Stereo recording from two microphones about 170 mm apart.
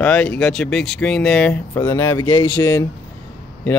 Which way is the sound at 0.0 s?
5° left (ahead or behind).